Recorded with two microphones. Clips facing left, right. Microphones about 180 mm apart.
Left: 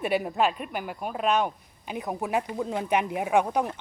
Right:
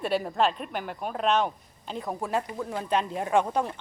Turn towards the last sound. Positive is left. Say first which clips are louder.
# left 1 dB
turn(degrees=15)  # may be behind; listen again after turning